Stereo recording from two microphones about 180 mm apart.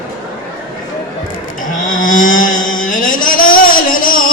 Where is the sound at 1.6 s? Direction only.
45° left (ahead or behind).